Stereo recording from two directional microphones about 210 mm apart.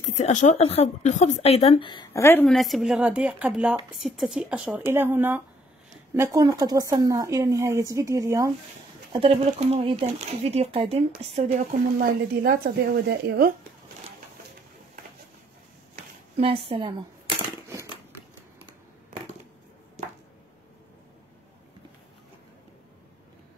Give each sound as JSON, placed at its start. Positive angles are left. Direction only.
{"t": 0.0, "sound": "speech", "side_deg": 35}
{"t": 9.1, "sound": "speech", "side_deg": -30}
{"t": 12.0, "sound": "speech", "side_deg": -45}
{"t": 16.0, "sound": "a sound", "side_deg": -30}